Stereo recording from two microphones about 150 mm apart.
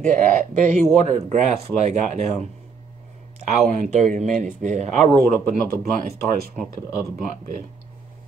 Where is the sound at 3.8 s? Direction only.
55° right (ahead or behind).